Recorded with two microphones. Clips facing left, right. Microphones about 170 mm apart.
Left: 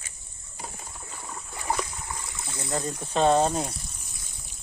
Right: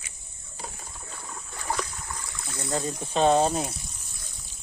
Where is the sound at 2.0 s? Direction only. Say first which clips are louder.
Left 1 dB; 20° left (ahead or behind).